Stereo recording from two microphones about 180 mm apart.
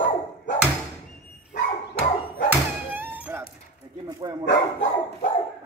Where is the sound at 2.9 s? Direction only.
10° right (ahead or behind).